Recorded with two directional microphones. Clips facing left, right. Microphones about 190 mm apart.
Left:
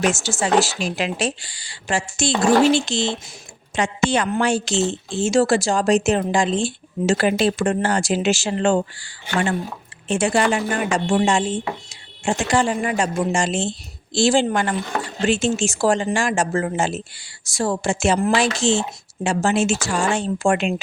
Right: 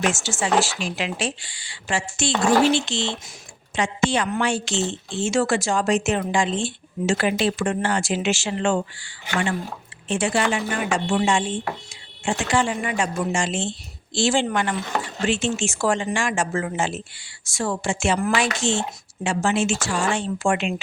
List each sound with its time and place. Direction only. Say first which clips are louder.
0.1 s a woman's voice: left 3 dB; 40° left (ahead or behind)
10.1 s a woman's voice: left 3 dB; 45° left (ahead or behind)